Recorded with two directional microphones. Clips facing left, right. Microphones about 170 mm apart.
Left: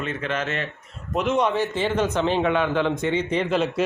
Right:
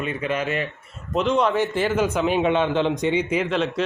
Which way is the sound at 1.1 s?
5° left (ahead or behind).